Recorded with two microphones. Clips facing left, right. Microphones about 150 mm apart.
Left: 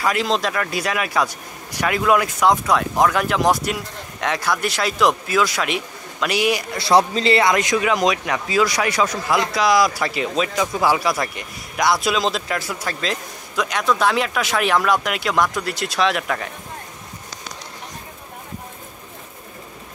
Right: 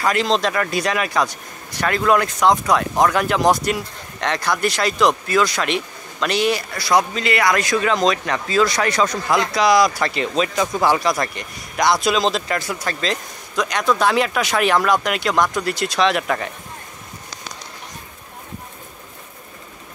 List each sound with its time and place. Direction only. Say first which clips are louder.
0.0 s speech: right 2 dB; 5° left (ahead or behind)
6.8 s a man's voice: left 3 dB; 30° left (ahead or behind); by 16.5 s centre (ahead or behind)